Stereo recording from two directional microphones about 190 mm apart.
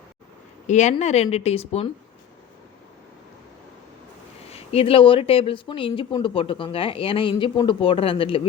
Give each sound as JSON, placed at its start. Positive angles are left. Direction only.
{"t": 0.7, "sound": "speech", "side_deg": 40}
{"t": 4.4, "sound": "speech", "side_deg": 30}